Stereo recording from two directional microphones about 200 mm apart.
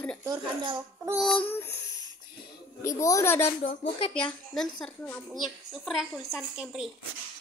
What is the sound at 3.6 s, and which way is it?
Speech, 30° left (ahead or behind).